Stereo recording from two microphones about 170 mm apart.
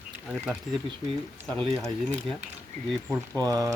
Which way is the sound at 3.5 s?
20° right (ahead or behind).